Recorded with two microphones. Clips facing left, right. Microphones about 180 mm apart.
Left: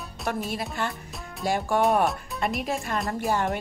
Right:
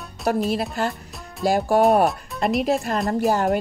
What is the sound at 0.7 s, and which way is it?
Speech, 40° right (ahead or behind).